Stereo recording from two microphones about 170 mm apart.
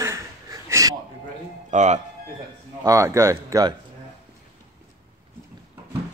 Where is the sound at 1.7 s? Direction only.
45° right (ahead or behind).